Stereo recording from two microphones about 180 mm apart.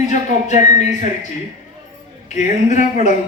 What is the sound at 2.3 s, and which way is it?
Speech, 40° left (ahead or behind).